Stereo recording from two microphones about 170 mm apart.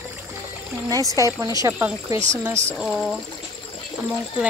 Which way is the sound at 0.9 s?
20° right (ahead or behind).